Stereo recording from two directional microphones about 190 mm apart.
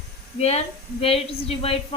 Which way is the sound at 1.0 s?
30° left (ahead or behind).